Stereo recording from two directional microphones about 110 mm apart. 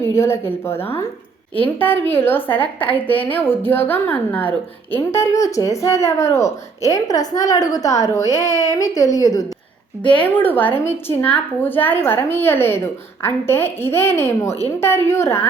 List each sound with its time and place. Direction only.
0.0 s speech: 25° left (ahead or behind)
1.8 s a woman's voice: 20° left (ahead or behind)
4.9 s speech: 25° left (ahead or behind)
10.0 s a woman's voice: 50° left (ahead or behind)
10.2 s a woman's voice: 15° left (ahead or behind)